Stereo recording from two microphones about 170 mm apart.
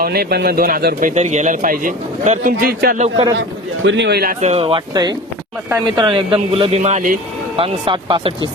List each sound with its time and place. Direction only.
0.0 s speech: 65° right (ahead or behind)
1.0 s a man's voice: 40° right (ahead or behind); by 3.0 s 60° right (ahead or behind)
3.8 s a man's voice: 90° right; by 4.4 s 70° right (ahead or behind)
4.4 s a man's voice: 40° right (ahead or behind)
7.5 s a man's voice: 30° right (ahead or behind)